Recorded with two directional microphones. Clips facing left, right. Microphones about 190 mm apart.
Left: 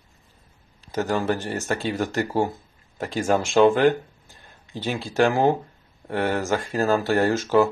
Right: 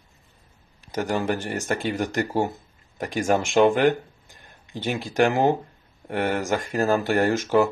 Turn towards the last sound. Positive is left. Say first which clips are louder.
# left 1 dB
turn(degrees=-15)  # may be behind; listen again after turning